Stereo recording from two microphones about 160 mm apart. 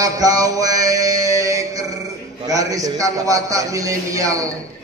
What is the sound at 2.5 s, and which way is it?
A man's voice, 20° right (ahead or behind).